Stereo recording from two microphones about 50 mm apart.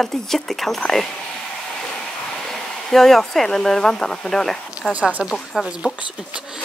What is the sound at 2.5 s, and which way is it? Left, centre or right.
Speech, centre.